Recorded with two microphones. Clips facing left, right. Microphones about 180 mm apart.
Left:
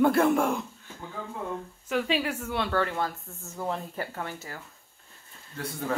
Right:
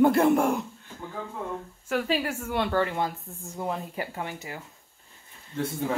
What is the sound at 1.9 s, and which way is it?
A woman's voice, 5° right (ahead or behind).